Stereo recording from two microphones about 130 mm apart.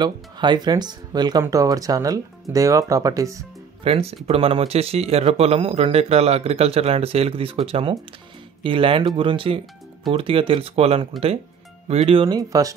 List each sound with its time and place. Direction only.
0.0 s speech: 35° right (ahead or behind)
3.8 s speech: 50° right (ahead or behind)
12.4 s speech: 25° right (ahead or behind)